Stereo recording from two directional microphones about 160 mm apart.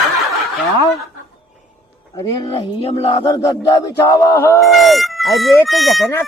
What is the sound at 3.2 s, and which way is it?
Speech, 20° left (ahead or behind).